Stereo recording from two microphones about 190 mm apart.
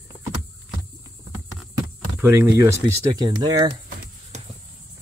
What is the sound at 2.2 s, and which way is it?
Speech, 10° right (ahead or behind).